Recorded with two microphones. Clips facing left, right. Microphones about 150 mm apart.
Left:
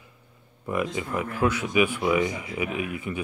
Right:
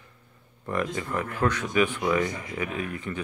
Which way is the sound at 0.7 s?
10° left (ahead or behind).